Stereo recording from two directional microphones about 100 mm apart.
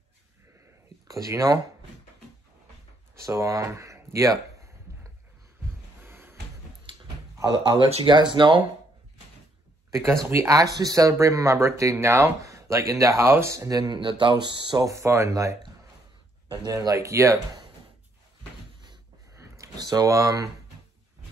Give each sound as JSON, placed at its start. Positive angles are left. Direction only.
{"t": 1.0, "sound": "speech", "side_deg": -35}
{"t": 3.3, "sound": "speech", "side_deg": -30}
{"t": 6.0, "sound": "a sound", "side_deg": -20}
{"t": 7.3, "sound": "speech", "side_deg": -40}
{"t": 9.8, "sound": "a sound", "side_deg": -30}
{"t": 10.2, "sound": "speech", "side_deg": -30}
{"t": 13.9, "sound": "speech", "side_deg": -55}
{"t": 14.8, "sound": "speech", "side_deg": -30}
{"t": 16.6, "sound": "speech", "side_deg": -35}
{"t": 19.4, "sound": "a sound", "side_deg": -35}